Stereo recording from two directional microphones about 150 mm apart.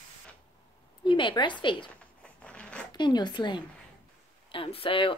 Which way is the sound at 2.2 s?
10° left (ahead or behind).